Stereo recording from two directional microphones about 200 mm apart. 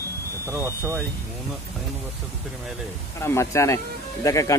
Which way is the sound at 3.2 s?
15° left (ahead or behind).